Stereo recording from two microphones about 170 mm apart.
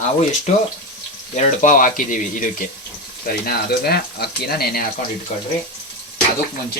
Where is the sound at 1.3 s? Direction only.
50° left (ahead or behind).